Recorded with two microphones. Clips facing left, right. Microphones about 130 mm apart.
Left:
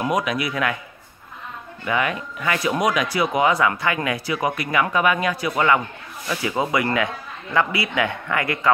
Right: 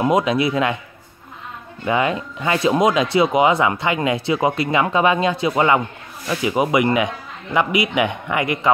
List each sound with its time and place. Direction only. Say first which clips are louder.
0.0 s speech: right 5 dB; 25° right (ahead or behind)
1.9 s speech: right 4 dB; 25° right (ahead or behind)